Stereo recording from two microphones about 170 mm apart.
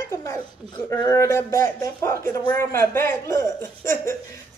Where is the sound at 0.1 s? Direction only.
20° left (ahead or behind).